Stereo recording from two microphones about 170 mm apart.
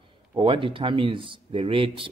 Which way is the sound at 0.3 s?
30° right (ahead or behind).